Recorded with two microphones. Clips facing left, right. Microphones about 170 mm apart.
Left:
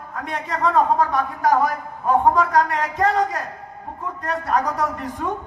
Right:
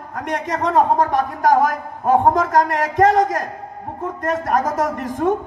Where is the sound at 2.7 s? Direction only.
90° right.